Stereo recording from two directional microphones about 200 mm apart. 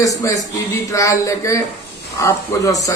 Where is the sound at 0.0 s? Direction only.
15° left (ahead or behind).